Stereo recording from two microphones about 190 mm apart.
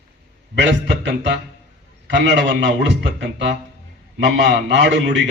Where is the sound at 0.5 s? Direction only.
65° right (ahead or behind).